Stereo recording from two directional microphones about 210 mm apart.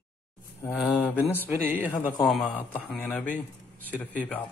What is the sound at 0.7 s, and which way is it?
Speech, 5° left (ahead or behind).